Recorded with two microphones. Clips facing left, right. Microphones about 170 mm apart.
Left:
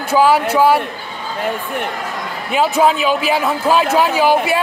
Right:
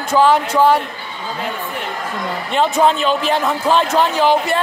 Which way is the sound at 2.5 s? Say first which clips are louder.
Left 1 dB; 5° left (ahead or behind).